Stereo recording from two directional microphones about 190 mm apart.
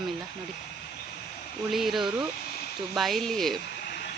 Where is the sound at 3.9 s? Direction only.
60° left (ahead or behind).